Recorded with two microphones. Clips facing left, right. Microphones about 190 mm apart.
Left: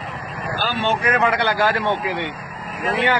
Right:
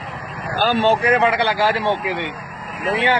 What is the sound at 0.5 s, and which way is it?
Speech, 45° right (ahead or behind).